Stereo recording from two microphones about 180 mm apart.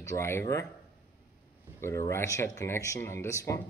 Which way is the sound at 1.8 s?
15° left (ahead or behind).